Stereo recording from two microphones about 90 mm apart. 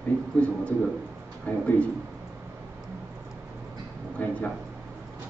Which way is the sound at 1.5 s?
15° left (ahead or behind).